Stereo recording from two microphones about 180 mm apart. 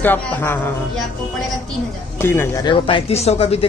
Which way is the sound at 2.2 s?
15° left (ahead or behind).